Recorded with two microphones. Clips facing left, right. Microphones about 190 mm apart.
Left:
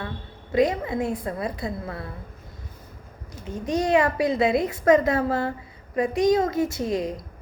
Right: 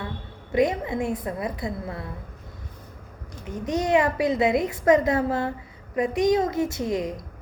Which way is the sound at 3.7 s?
20° right (ahead or behind).